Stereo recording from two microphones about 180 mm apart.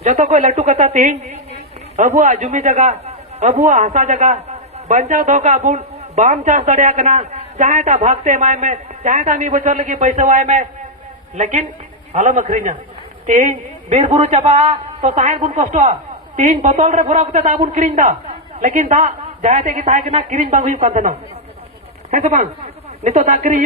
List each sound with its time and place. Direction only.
0.0 s a man's voice: 40° right (ahead or behind)